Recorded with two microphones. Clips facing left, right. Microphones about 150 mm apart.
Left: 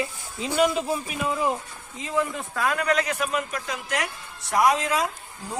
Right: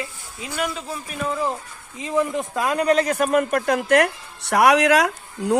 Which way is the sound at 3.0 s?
45° right (ahead or behind).